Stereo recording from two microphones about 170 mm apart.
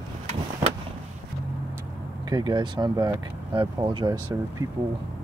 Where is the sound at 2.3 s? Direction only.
25° right (ahead or behind).